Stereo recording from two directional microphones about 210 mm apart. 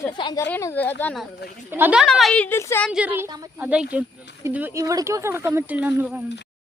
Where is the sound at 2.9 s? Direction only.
10° right (ahead or behind).